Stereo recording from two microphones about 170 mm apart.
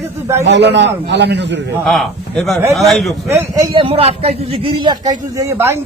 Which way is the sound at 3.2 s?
15° right (ahead or behind).